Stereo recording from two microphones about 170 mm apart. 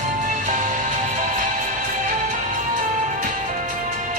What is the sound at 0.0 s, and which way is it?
Music, 50° right (ahead or behind).